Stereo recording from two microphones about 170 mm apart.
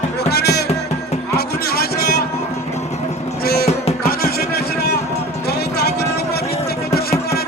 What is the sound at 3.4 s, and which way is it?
Music, 65° left (ahead or behind).